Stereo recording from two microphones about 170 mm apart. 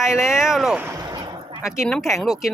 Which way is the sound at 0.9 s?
25° right (ahead or behind).